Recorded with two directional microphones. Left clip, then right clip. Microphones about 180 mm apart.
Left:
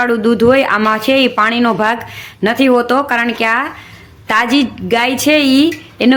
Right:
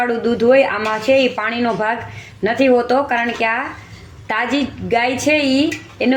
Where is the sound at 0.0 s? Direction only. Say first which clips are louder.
Left 4 dB; 40° left (ahead or behind).